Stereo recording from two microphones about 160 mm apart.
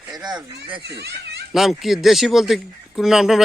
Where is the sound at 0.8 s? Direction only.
90° right.